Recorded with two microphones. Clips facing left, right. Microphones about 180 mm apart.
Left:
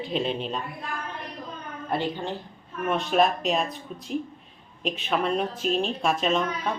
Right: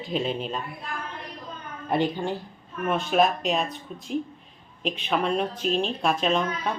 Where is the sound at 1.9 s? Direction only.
15° right (ahead or behind).